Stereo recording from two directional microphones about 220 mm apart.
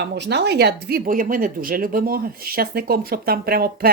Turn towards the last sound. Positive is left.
turn(degrees=-45)  # may be behind; listen again after turning